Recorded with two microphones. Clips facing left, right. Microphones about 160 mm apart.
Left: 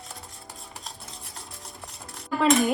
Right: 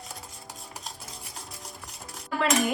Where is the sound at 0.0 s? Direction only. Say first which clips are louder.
Even; centre (ahead or behind).